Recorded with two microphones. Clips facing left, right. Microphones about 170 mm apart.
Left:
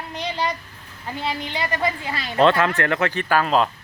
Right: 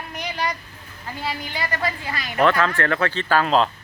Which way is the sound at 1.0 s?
25° left (ahead or behind).